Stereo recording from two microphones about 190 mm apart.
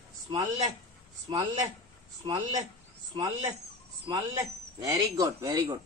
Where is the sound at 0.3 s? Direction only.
20° right (ahead or behind).